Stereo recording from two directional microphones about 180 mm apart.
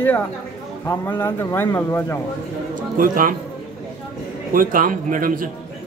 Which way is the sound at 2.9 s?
50° right (ahead or behind).